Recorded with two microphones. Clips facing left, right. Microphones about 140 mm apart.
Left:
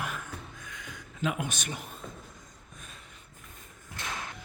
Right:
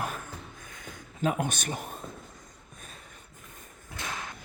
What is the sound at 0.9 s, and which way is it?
Speech, 40° right (ahead or behind).